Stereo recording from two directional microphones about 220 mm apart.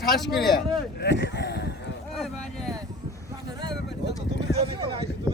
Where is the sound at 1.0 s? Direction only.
50° left (ahead or behind).